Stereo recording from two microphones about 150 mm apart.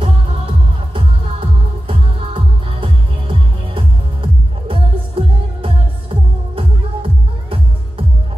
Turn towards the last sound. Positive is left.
turn(degrees=-35)  # may be behind; listen again after turning